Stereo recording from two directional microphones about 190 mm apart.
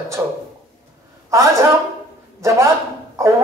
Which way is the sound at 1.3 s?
15° right (ahead or behind).